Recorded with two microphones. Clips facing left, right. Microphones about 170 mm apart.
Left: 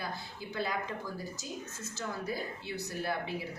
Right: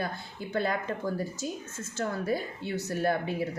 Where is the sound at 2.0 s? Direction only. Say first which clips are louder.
Right 7 dB; 50° right (ahead or behind).